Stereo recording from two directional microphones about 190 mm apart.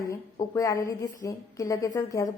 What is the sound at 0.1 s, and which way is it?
A woman's voice, 15° left (ahead or behind).